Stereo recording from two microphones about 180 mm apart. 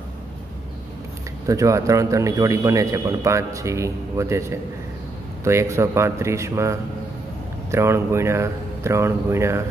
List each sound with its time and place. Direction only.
1.4 s a man's voice: 15° right (ahead or behind)